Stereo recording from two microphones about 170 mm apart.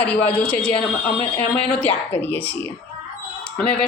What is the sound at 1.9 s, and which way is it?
Speech, 35° left (ahead or behind).